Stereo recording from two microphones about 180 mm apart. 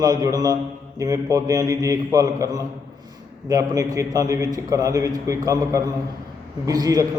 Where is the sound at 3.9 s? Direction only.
20° right (ahead or behind).